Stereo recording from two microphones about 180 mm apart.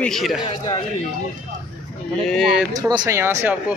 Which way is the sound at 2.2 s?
Centre (ahead or behind).